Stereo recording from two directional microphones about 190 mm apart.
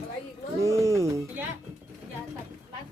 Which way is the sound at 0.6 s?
15° right (ahead or behind).